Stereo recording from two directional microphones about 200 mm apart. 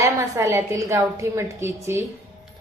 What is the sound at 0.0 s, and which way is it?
A woman's voice, 15° right (ahead or behind).